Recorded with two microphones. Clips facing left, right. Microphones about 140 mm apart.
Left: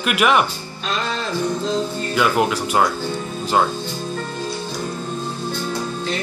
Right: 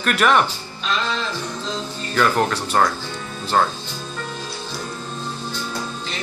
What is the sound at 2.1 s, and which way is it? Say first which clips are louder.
Speech: even; 10° left (ahead or behind).